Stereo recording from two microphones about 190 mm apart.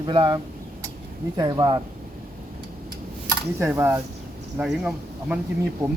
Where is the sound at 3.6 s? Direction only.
15° right (ahead or behind).